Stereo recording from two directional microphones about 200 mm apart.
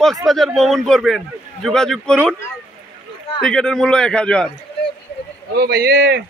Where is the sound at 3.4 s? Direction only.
5° left (ahead or behind).